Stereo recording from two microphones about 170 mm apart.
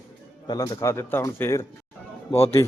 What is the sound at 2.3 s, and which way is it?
Speech, 35° left (ahead or behind).